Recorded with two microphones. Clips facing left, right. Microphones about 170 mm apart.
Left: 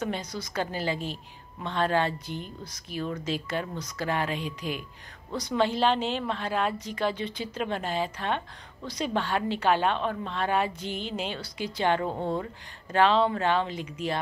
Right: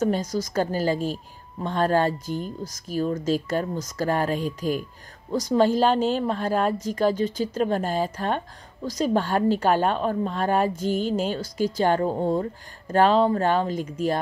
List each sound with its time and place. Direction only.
0.0 s a woman's voice: 45° right (ahead or behind)